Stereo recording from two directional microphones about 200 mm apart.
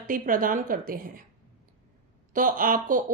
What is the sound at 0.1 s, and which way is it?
A woman's voice, 45° right (ahead or behind).